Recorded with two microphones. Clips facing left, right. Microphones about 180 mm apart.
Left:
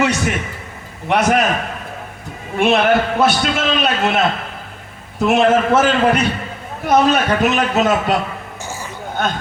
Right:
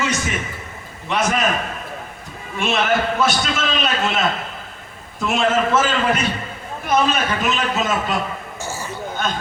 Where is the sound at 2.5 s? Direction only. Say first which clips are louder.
Left 6 dB; 60° left (ahead or behind).